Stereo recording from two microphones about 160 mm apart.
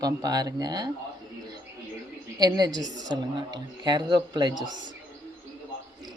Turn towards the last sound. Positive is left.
turn(degrees=-25)  # may be behind; listen again after turning